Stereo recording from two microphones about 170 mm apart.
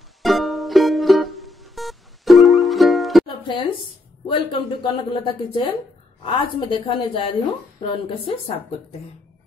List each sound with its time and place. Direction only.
0.2 s music: centre (ahead or behind)
3.3 s music: 30° left (ahead or behind)
4.3 s a woman's voice: 30° left (ahead or behind)